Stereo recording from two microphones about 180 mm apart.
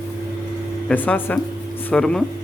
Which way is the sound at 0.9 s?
10° left (ahead or behind).